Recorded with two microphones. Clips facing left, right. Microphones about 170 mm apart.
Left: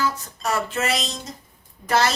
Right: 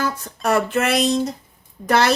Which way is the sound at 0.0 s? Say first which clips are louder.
Right 3 dB; 60° right (ahead or behind).